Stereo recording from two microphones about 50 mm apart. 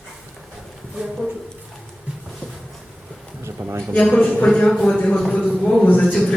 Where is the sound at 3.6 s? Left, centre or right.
Right.